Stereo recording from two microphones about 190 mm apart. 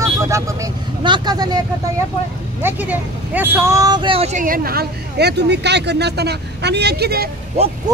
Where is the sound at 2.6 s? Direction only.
10° right (ahead or behind); by 7.3 s 55° right (ahead or behind).